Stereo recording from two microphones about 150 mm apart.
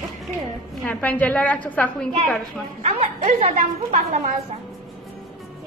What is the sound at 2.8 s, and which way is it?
Speech, 45° right (ahead or behind).